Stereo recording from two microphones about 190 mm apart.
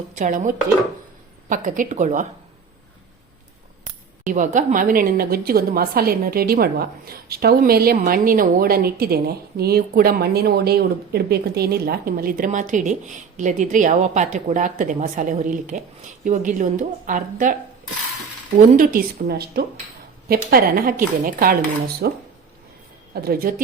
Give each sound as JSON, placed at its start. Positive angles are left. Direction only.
{"t": 0.2, "sound": "a woman's voice", "side_deg": -45}
{"t": 4.2, "sound": "a woman's voice", "side_deg": -45}
{"t": 18.8, "sound": "a woman's voice", "side_deg": -50}
{"t": 22.0, "sound": "a woman's voice", "side_deg": -60}